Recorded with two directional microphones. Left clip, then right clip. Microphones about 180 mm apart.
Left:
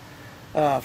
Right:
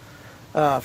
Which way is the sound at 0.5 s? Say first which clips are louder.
Right 1 dB; 35° right (ahead or behind).